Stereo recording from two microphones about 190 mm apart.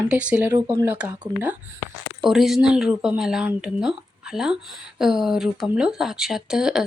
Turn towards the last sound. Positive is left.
turn(degrees=-5)  # may be behind; listen again after turning